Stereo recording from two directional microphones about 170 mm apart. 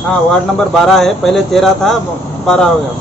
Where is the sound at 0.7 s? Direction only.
Centre (ahead or behind).